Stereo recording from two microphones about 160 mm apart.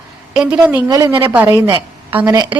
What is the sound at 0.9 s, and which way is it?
A woman's voice, 20° right (ahead or behind).